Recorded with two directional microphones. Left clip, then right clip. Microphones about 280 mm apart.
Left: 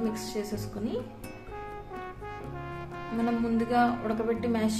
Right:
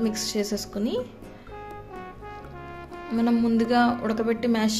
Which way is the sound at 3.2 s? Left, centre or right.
Right.